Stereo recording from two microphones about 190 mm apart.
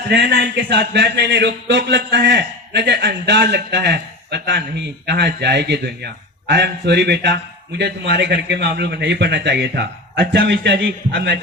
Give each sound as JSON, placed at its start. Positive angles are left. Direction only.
{"t": 0.1, "sound": "a man's voice", "side_deg": -65}